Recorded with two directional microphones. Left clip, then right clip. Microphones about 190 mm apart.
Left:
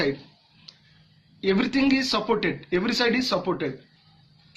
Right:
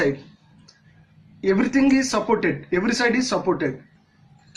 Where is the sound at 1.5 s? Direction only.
55° left (ahead or behind).